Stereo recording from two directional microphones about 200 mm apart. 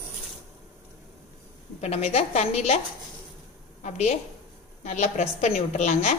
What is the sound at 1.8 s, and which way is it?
A woman's voice, 35° left (ahead or behind).